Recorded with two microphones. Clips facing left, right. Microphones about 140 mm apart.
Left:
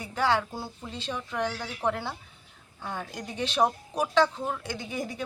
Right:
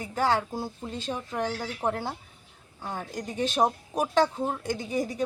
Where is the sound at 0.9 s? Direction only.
45° right (ahead or behind).